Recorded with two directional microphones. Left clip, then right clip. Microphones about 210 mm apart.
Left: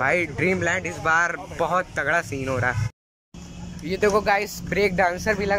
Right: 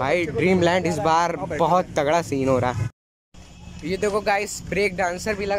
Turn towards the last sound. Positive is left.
turn(degrees=-5)  # may be behind; listen again after turning